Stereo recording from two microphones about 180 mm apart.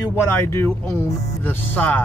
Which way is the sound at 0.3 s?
10° left (ahead or behind).